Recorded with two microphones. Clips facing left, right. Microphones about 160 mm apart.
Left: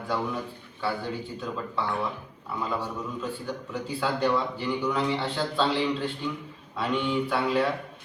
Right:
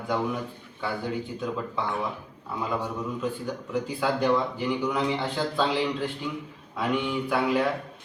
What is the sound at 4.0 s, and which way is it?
A man's voice, 10° right (ahead or behind).